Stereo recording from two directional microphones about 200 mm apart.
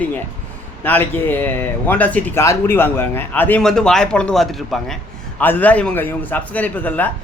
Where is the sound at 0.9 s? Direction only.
10° left (ahead or behind).